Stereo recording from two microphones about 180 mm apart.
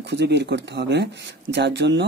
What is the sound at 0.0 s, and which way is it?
Speech, 70° right (ahead or behind).